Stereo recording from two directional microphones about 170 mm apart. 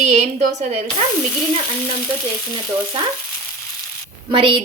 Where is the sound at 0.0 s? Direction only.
45° right (ahead or behind).